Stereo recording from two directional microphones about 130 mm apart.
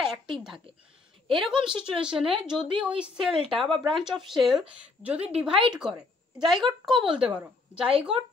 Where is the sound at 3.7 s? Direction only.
40° right (ahead or behind).